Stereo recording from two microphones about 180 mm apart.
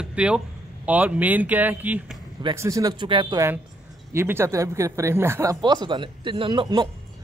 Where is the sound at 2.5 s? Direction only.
15° right (ahead or behind).